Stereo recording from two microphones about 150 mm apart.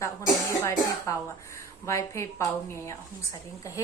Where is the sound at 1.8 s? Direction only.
20° left (ahead or behind).